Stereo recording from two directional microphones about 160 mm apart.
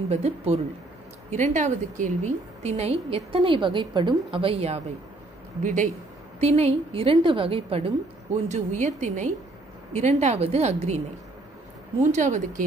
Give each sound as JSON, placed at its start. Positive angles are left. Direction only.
{"t": 0.1, "sound": "a woman's voice", "side_deg": -40}
{"t": 5.6, "sound": "a woman's voice", "side_deg": -55}
{"t": 6.4, "sound": "a woman's voice", "side_deg": -40}
{"t": 8.5, "sound": "a woman's voice", "side_deg": -50}
{"t": 12.0, "sound": "a woman's voice", "side_deg": -50}